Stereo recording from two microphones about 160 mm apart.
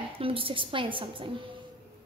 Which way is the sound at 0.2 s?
35° right (ahead or behind).